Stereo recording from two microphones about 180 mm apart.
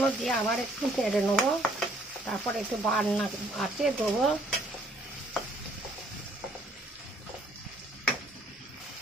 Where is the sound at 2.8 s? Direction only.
Centre (ahead or behind).